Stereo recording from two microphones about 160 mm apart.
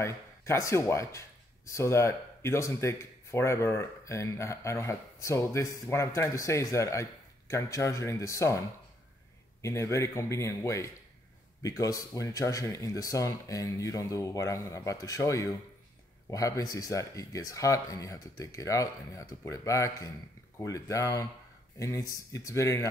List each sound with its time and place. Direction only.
0.0 s speech: 15° left (ahead or behind)